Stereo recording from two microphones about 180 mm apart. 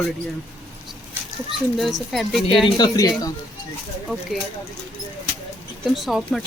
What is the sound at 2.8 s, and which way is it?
Speech, 20° left (ahead or behind).